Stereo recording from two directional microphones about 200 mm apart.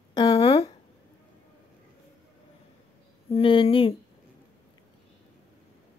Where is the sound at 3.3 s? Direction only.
25° left (ahead or behind).